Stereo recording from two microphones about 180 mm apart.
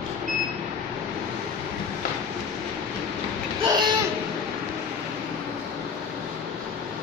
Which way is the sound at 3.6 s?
25° right (ahead or behind).